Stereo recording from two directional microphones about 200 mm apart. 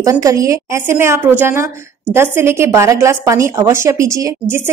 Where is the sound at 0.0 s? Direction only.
15° right (ahead or behind).